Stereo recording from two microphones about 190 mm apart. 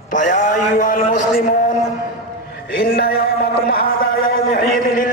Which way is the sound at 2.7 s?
55° left (ahead or behind).